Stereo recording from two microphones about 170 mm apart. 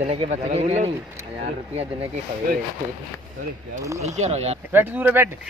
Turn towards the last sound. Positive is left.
turn(degrees=-10)  # may be behind; listen again after turning